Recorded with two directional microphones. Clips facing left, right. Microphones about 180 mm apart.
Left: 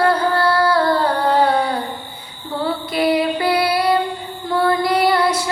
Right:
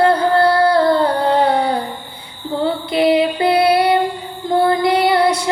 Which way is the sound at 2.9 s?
25° right (ahead or behind).